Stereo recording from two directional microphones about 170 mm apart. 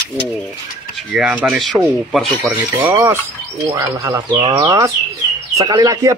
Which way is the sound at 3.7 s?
20° right (ahead or behind).